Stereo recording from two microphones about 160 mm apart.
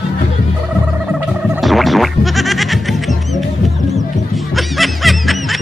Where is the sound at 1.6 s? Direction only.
Centre (ahead or behind).